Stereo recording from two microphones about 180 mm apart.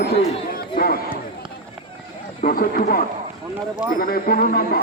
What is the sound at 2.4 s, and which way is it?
A man's voice, 55° left (ahead or behind).